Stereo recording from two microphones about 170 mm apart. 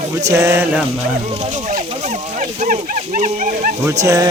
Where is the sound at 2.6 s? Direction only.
50° right (ahead or behind).